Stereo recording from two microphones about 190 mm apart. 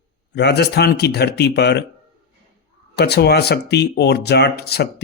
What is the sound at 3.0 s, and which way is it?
Speech, 60° left (ahead or behind).